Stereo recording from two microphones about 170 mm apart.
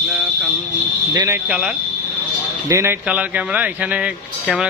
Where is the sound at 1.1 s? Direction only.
20° right (ahead or behind).